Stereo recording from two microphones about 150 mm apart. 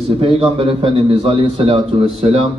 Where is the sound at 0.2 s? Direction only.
40° right (ahead or behind).